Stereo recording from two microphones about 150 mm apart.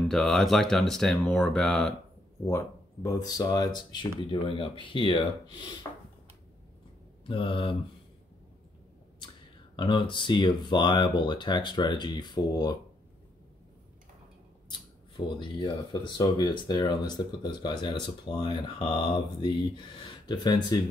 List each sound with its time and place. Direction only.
0.1 s speech: centre (ahead or behind)
2.4 s speech: 20° left (ahead or behind)
7.2 s speech: 35° left (ahead or behind)
9.8 s speech: 30° left (ahead or behind)
14.7 s speech: 35° left (ahead or behind)